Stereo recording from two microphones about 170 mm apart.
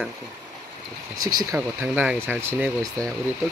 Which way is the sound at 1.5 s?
10° right (ahead or behind).